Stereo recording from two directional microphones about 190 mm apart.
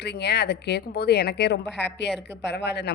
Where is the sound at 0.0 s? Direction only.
60° left (ahead or behind).